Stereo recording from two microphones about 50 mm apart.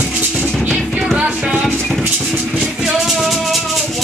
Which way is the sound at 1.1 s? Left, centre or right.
Right.